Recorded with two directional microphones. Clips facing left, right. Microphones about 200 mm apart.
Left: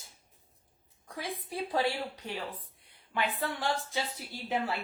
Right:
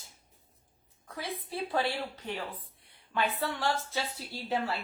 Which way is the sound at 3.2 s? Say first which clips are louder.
Right 1 dB; 15° left (ahead or behind).